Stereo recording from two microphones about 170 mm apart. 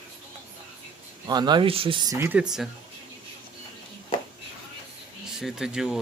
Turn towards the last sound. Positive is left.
turn(degrees=-5)  # may be behind; listen again after turning